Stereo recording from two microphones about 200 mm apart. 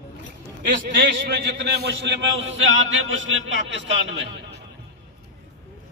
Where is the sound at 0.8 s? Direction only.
55° right (ahead or behind).